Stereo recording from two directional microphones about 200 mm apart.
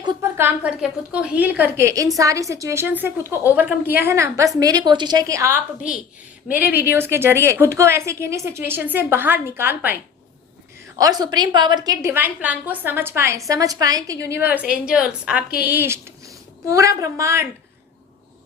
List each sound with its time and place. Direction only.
0.0 s a woman's voice: 15° right (ahead or behind)
6.7 s a woman's voice: 50° left (ahead or behind)
6.9 s a woman's voice: 10° right (ahead or behind)
10.9 s a woman's voice: 20° right (ahead or behind)